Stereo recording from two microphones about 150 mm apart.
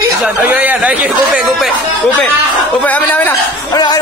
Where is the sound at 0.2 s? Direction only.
10° right (ahead or behind).